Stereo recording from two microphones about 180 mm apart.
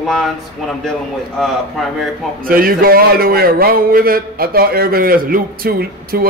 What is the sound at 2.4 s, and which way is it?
A man's voice, 55° right (ahead or behind).